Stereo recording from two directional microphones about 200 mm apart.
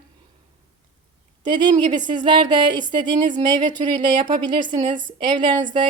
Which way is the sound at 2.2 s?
20° right (ahead or behind).